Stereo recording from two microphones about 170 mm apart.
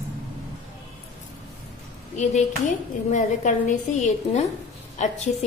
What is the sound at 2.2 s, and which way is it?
A woman's voice, 45° left (ahead or behind).